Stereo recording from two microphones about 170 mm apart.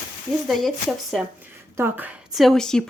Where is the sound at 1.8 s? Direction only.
10° right (ahead or behind); by 2.8 s 5° left (ahead or behind).